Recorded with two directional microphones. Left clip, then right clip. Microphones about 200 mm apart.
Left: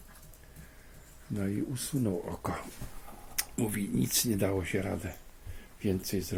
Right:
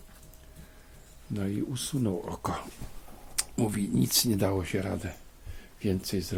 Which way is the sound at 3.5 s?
20° right (ahead or behind).